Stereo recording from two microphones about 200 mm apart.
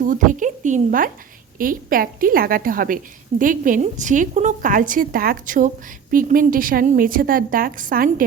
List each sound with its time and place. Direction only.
0.1 s a woman's voice: 40° right (ahead or behind)